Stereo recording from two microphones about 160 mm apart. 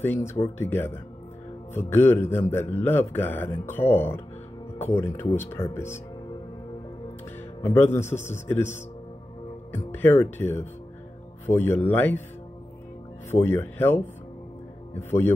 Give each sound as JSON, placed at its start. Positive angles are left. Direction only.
{"t": 0.0, "sound": "a man's voice", "side_deg": 15}
{"t": 7.6, "sound": "a man's voice", "side_deg": 15}
{"t": 13.3, "sound": "a man's voice", "side_deg": 15}